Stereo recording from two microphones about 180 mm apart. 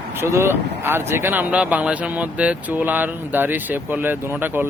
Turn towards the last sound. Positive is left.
turn(degrees=-10)  # may be behind; listen again after turning